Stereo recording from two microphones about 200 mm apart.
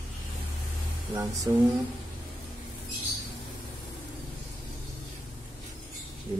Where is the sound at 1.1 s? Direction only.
15° right (ahead or behind).